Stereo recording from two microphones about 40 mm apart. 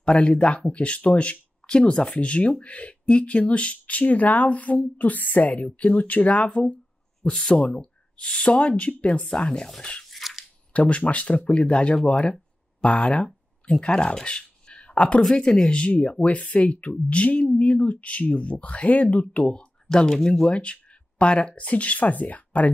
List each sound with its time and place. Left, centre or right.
0.0 s speech: left
7.3 s speech: centre
7.7 s speech: left
8.5 s speech: left
9.3 s speech: left
10.0 s a sound: centre
10.7 s speech: left
15.9 s speech: left; by 20.4 s centre
20.4 s speech: left